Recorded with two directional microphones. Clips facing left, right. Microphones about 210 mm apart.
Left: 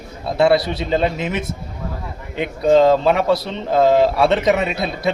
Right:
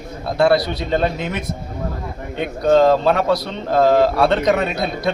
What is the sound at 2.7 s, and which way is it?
Speech, centre (ahead or behind).